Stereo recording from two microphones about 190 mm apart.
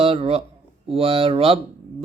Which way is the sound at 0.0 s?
30° right (ahead or behind).